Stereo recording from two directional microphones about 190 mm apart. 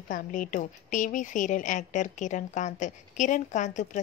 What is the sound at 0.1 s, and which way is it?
A woman's voice, 45° left (ahead or behind).